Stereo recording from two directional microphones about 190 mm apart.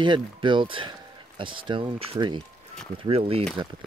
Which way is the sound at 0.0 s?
25° right (ahead or behind).